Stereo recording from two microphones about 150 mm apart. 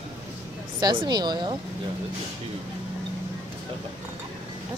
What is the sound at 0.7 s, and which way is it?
Speech, 25° right (ahead or behind).